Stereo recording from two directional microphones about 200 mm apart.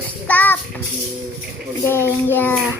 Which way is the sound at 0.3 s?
10° left (ahead or behind).